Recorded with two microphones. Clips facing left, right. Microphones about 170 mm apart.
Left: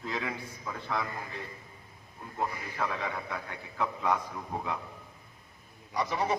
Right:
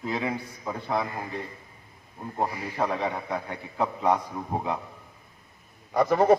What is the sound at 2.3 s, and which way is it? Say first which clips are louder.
A man's voice: right 5 dB; 35° right (ahead or behind).